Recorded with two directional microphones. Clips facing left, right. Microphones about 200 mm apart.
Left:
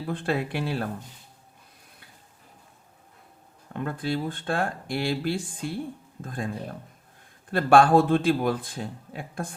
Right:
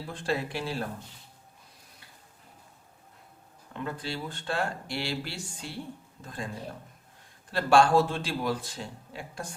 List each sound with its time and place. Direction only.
0.1 s speech: 60° left (ahead or behind)
3.7 s speech: 50° left (ahead or behind)
7.5 s speech: 55° left (ahead or behind)